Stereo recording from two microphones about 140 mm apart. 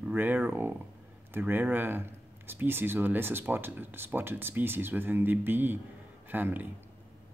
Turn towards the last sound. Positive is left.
turn(degrees=-15)  # may be behind; listen again after turning